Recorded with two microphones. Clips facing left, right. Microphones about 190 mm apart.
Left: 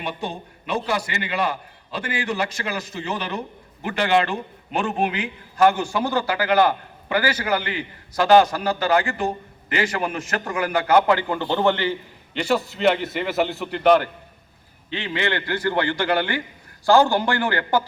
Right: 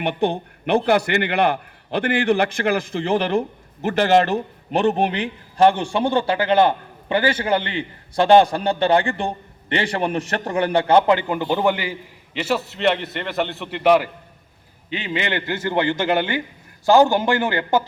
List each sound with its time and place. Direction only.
0.0 s a man's voice: 60° right (ahead or behind); by 14.1 s 5° right (ahead or behind)
14.8 s a man's voice: 15° right (ahead or behind)